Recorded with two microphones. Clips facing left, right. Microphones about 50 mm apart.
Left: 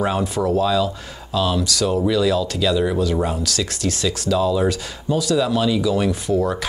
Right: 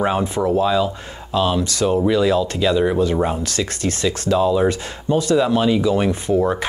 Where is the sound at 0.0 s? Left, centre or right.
Right.